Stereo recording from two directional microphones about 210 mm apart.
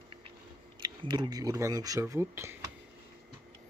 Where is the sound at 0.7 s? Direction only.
20° right (ahead or behind).